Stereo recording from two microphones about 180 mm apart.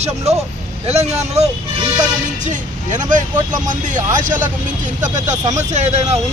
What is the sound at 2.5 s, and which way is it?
Speech, 45° right (ahead or behind).